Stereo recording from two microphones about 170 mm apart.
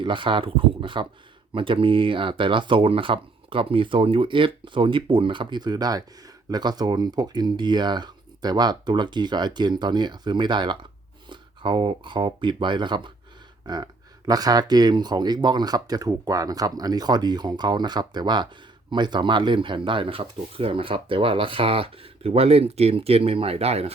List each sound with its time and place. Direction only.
0.0 s speech: 30° right (ahead or behind)